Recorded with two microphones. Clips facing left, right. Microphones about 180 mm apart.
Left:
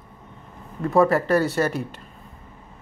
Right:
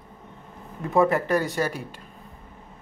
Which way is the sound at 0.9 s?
20° right (ahead or behind).